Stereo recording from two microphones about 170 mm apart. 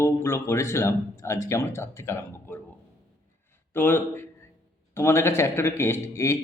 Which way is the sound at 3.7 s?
10° left (ahead or behind).